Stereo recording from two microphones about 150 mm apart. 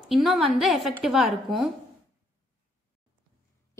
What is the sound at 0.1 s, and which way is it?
A woman's voice, centre (ahead or behind).